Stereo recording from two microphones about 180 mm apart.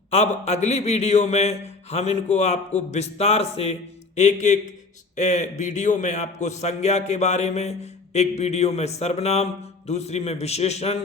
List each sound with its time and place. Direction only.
0.1 s a man's voice: 35° left (ahead or behind)